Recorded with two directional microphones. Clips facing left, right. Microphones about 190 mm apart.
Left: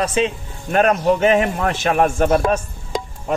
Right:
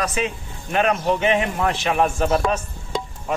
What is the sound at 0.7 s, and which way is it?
A man's voice, 45° left (ahead or behind).